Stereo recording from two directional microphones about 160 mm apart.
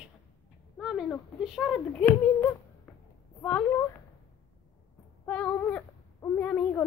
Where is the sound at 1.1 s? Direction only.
5° left (ahead or behind).